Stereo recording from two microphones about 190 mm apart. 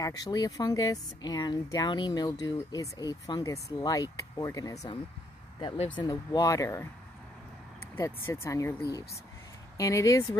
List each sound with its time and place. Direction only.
0.0 s speech: 20° left (ahead or behind)
7.9 s speech: 15° left (ahead or behind)